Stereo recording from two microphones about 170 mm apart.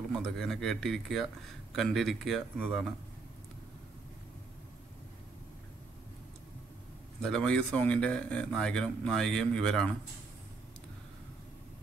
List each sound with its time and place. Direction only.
0.2 s speech: centre (ahead or behind)
7.2 s speech: 5° left (ahead or behind)